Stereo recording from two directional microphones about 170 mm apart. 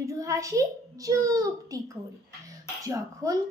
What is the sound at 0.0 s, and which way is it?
A child's voice, 20° right (ahead or behind).